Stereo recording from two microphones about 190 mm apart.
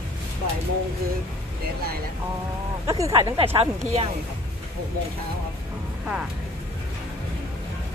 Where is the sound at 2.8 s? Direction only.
15° right (ahead or behind).